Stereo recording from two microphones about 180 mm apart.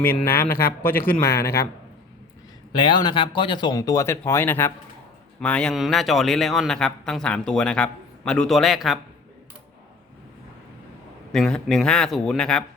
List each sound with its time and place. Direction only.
0.0 s a man's voice: 10° left (ahead or behind)
2.7 s a man's voice: 25° left (ahead or behind); by 9.0 s centre (ahead or behind)
11.3 s a man's voice: 5° left (ahead or behind)